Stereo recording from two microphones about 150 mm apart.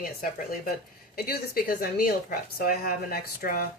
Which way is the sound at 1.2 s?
85° left.